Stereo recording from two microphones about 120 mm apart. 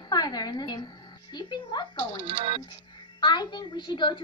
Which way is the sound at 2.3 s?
45° right (ahead or behind).